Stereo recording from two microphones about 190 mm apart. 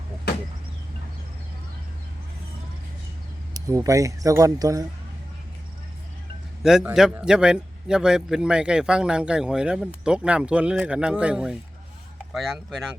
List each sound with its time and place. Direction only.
3.5 s speech: 15° right (ahead or behind)
6.6 s a man's voice: 5° right (ahead or behind)